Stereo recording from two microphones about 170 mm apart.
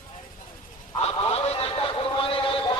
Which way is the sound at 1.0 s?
35° left (ahead or behind).